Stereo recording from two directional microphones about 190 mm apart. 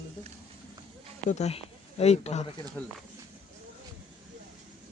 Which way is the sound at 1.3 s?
35° left (ahead or behind).